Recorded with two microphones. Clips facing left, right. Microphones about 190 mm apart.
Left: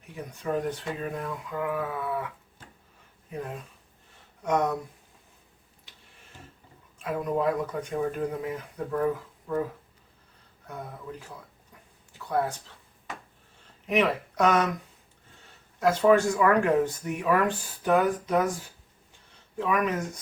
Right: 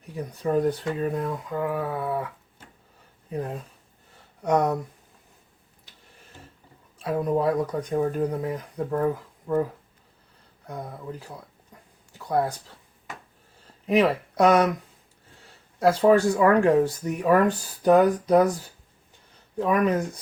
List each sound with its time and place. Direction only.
0.1 s speech: 35° right (ahead or behind)
4.4 s speech: 35° right (ahead or behind)
7.0 s speech: 35° right (ahead or behind)
10.7 s speech: 35° right (ahead or behind)
12.1 s a sound: 35° right (ahead or behind)
13.8 s speech: 35° right (ahead or behind)
15.8 s speech: 35° right (ahead or behind)